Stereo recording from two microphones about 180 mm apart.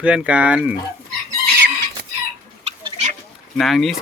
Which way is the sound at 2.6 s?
35° right (ahead or behind).